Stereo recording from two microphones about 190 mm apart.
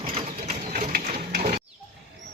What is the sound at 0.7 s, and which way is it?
Sewing machine, 45° right (ahead or behind).